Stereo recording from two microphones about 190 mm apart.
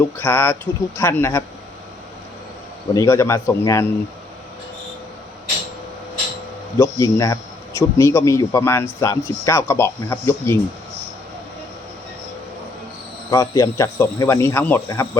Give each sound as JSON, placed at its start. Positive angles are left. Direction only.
{"t": 0.2, "sound": "a man's voice", "side_deg": 10}
{"t": 2.9, "sound": "a man's voice", "side_deg": 15}
{"t": 6.7, "sound": "a man's voice", "side_deg": 15}
{"t": 13.3, "sound": "a man's voice", "side_deg": 20}